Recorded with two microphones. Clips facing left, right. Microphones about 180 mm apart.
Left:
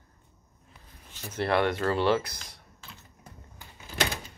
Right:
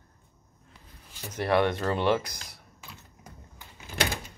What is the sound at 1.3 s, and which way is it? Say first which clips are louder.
Speech: right 1 dB; 15° right (ahead or behind).